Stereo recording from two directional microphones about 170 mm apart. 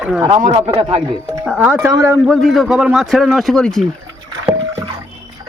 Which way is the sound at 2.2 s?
Centre (ahead or behind).